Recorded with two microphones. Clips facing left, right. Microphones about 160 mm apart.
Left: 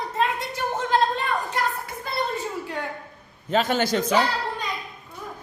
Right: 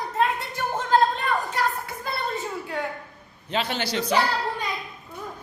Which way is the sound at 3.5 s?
45° left (ahead or behind).